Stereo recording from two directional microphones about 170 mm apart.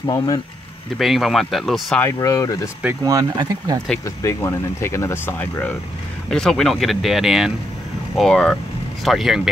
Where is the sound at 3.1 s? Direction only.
20° right (ahead or behind).